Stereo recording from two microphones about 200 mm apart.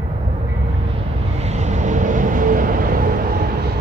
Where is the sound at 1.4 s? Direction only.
35° right (ahead or behind).